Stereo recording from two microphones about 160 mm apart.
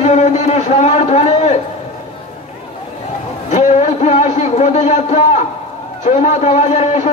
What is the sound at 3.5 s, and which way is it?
A man's voice, 45° left (ahead or behind).